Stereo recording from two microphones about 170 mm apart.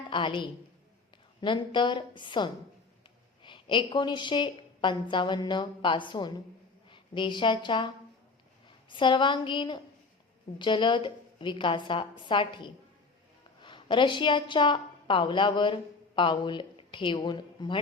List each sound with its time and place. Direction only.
0.1 s a woman's voice: 30° left (ahead or behind)